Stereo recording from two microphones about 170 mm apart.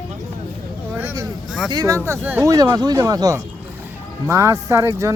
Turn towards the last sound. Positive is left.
turn(degrees=-15)  # may be behind; listen again after turning